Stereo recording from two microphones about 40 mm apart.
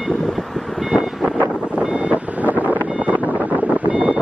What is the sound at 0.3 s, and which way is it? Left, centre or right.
Vehicle, centre.